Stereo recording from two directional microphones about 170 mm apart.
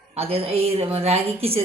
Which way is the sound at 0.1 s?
35° right (ahead or behind).